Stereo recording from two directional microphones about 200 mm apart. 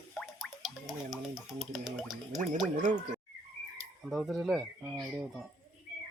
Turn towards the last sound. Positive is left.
turn(degrees=0)  # may be behind; listen again after turning